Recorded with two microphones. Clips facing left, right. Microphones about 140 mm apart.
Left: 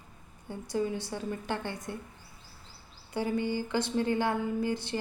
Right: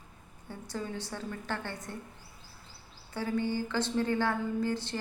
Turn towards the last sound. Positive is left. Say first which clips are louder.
# left 1 dB
turn(degrees=15)  # may be behind; listen again after turning